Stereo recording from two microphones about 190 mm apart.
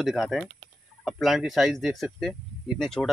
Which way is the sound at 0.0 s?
Centre (ahead or behind).